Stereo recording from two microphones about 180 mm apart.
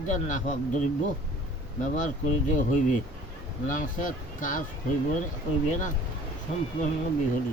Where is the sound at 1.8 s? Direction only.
45° left (ahead or behind).